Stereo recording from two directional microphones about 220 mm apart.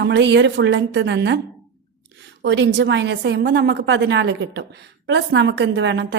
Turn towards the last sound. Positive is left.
turn(degrees=-50)  # may be behind; listen again after turning